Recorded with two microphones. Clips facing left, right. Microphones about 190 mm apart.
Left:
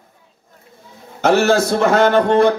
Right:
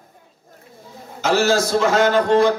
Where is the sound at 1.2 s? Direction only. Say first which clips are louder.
Left 4 dB; 60° left (ahead or behind).